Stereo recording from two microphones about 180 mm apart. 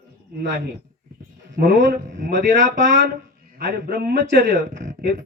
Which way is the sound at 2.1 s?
75° right (ahead or behind).